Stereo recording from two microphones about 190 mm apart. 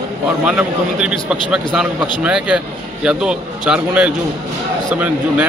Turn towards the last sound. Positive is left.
turn(degrees=-10)  # may be behind; listen again after turning